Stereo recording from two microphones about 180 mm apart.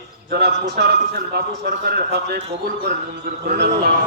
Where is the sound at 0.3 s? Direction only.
65° right (ahead or behind).